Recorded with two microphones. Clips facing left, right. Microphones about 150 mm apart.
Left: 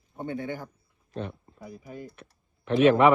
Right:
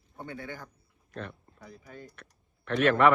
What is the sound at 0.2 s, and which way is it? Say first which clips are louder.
A man's voice: left 7 dB; 20° left (ahead or behind).